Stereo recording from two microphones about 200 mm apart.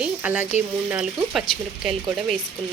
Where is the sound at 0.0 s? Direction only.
5° right (ahead or behind).